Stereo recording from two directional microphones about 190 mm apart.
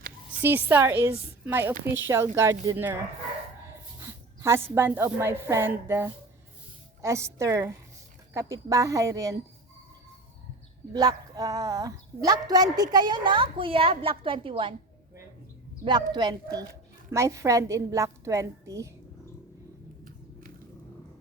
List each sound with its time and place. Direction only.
0.4 s a woman's voice: 10° right (ahead or behind)
4.0 s a woman's voice: 15° right (ahead or behind)
10.9 s a woman's voice: 20° right (ahead or behind)
15.8 s a woman's voice: 25° right (ahead or behind)